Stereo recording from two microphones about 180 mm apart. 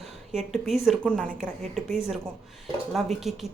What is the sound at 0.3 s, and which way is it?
Speech, centre (ahead or behind).